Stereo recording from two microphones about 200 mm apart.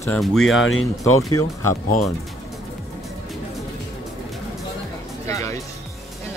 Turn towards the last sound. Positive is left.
turn(degrees=15)  # may be behind; listen again after turning